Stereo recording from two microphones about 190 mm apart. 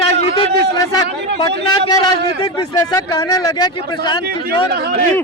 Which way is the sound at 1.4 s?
25° left (ahead or behind).